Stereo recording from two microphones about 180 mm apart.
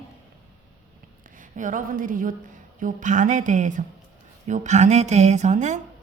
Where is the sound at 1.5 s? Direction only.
45° right (ahead or behind).